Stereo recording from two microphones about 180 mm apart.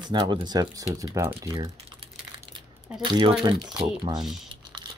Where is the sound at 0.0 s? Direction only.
25° right (ahead or behind).